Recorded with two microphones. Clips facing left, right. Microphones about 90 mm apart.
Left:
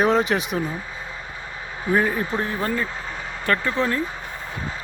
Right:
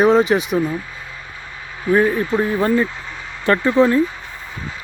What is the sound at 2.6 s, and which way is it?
Speech, 25° right (ahead or behind).